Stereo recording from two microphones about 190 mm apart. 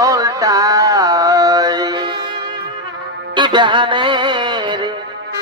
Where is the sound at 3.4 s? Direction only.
25° right (ahead or behind).